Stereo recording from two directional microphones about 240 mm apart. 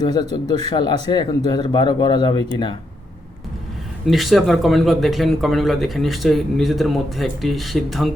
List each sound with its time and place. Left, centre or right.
0.0 s speech: centre
4.0 s speech: centre